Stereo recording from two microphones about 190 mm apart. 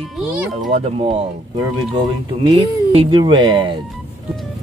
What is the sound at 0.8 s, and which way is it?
Speech, 30° right (ahead or behind).